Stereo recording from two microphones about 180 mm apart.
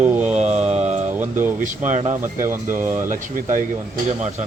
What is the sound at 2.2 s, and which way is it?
Speech, 15° right (ahead or behind).